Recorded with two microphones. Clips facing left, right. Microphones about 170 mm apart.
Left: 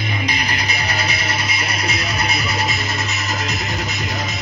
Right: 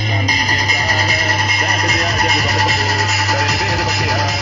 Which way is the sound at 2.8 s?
75° right (ahead or behind).